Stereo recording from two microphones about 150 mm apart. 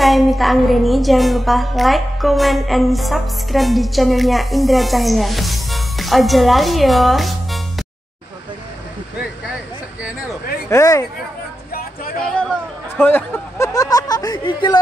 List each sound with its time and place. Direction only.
0.0 s a woman's voice: centre (ahead or behind)
10.7 s speech: 20° left (ahead or behind)
12.4 s chatter: centre (ahead or behind)
13.0 s a sound: 15° left (ahead or behind); by 14.8 s 30° left (ahead or behind)